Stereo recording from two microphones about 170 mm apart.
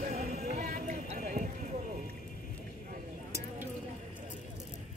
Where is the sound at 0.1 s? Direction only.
40° right (ahead or behind).